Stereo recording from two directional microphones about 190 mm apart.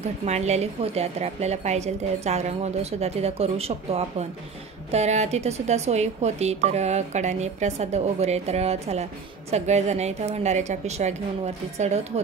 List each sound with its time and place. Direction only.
0.2 s a woman's voice: 35° right (ahead or behind)